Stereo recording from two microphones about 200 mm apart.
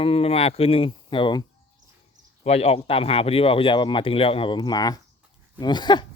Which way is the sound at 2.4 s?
30° left (ahead or behind).